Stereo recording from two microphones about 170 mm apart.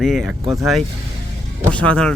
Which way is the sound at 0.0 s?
Centre (ahead or behind).